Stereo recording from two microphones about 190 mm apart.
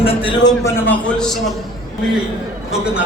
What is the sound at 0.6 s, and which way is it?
Speech, 5° left (ahead or behind).